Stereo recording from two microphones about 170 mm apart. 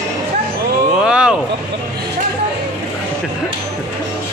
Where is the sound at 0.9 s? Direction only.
5° right (ahead or behind).